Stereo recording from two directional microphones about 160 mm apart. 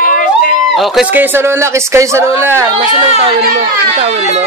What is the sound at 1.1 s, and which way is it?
A man's voice, 15° right (ahead or behind).